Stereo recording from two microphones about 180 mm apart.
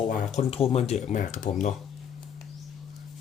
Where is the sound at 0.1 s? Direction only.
45° left (ahead or behind).